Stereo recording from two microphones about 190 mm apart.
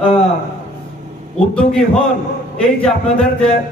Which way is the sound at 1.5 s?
5° left (ahead or behind).